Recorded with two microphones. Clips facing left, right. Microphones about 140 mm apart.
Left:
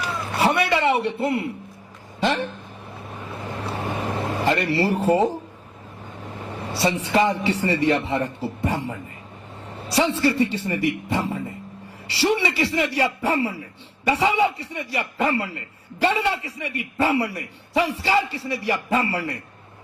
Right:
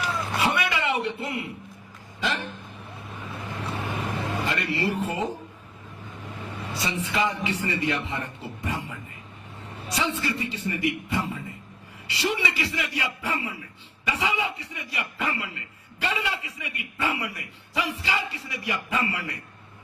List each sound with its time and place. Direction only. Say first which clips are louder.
0.3 s a sound: left 7 dB; 35° left (ahead or behind)
3.7 s vehicle: left 4 dB; 35° left (ahead or behind)
5.0 s a man's voice: left 10 dB; 35° left (ahead or behind)
6.6 s a woman's voice: left 7 dB; 35° left (ahead or behind)